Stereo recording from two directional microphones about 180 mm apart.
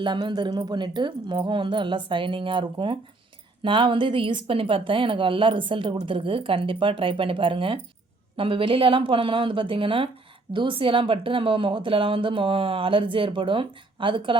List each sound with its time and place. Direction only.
0.0 s a woman's voice: 25° right (ahead or behind)